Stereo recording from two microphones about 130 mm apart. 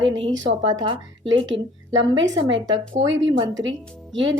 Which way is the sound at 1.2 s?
45° right (ahead or behind).